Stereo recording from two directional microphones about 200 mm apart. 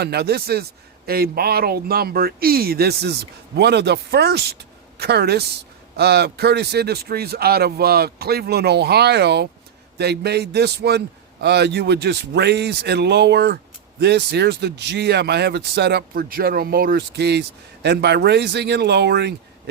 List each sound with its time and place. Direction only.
0.0 s a man's voice: 55° right (ahead or behind)